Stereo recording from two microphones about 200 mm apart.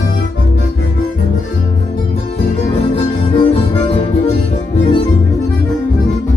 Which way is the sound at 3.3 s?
25° left (ahead or behind).